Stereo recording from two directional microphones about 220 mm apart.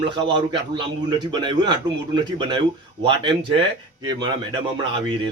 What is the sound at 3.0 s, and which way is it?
Speech, 20° right (ahead or behind).